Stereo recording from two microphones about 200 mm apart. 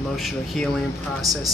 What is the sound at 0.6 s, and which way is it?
Speech, centre (ahead or behind).